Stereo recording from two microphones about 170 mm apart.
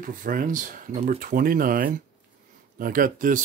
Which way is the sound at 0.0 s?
55° right (ahead or behind).